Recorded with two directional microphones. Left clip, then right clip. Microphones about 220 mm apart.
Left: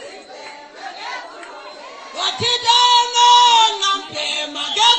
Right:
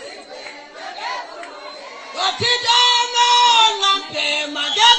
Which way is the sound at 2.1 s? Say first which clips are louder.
Right 1 dB; 60° left (ahead or behind).